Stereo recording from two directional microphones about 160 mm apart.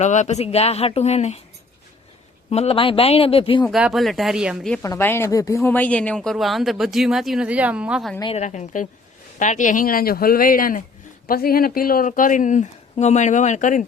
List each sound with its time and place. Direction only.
0.0 s speech: 45° left (ahead or behind)
2.5 s speech: 40° left (ahead or behind)
3.6 s speech: centre (ahead or behind)
4.8 s speech: 15° left (ahead or behind); by 8.1 s 5° right (ahead or behind)
8.4 s speech: 50° left (ahead or behind)